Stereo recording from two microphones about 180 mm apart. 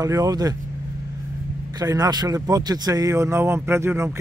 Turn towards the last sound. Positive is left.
turn(degrees=-15)  # may be behind; listen again after turning